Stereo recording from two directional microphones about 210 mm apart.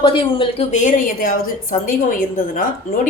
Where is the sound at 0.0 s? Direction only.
25° left (ahead or behind).